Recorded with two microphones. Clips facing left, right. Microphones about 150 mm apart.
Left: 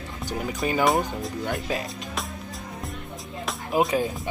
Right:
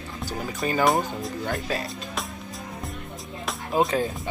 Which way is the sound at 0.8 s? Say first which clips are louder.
Right 1 dB; centre (ahead or behind).